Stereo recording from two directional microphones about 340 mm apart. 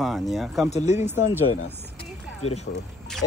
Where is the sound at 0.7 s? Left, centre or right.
Centre.